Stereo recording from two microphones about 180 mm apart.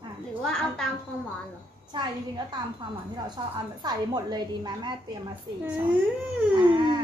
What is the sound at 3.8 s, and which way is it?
Speech, 20° right (ahead or behind).